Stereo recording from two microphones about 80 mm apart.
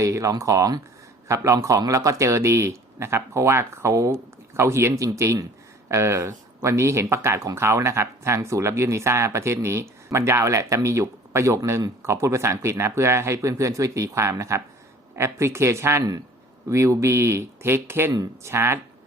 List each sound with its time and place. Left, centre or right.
0.0 s speech: right